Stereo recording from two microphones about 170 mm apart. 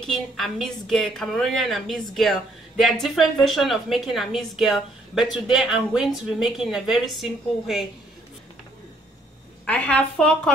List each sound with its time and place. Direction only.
0.0 s a woman's voice: centre (ahead or behind)
9.7 s a woman's voice: 10° left (ahead or behind)